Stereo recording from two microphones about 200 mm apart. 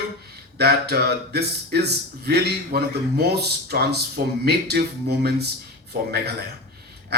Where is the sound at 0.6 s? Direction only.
55° right (ahead or behind).